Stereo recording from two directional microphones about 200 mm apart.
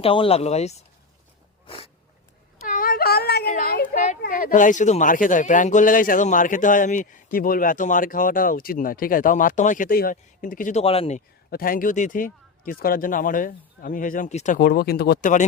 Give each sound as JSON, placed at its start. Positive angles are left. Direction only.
{"t": 0.0, "sound": "speech", "side_deg": 30}
{"t": 1.6, "sound": "snort", "side_deg": 25}
{"t": 2.6, "sound": "a sound", "side_deg": 45}
{"t": 3.5, "sound": "a child's voice", "side_deg": 45}
{"t": 11.5, "sound": "a man's voice", "side_deg": 45}